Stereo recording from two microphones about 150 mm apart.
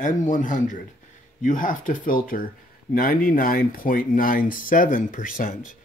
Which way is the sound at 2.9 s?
70° left (ahead or behind).